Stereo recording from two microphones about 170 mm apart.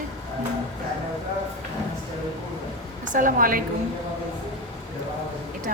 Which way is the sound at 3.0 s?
50° right (ahead or behind).